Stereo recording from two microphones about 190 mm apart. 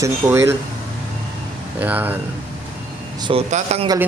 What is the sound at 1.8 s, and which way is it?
Speech, 10° right (ahead or behind).